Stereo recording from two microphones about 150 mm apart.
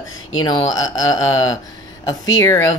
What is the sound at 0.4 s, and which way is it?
Speech, 30° left (ahead or behind).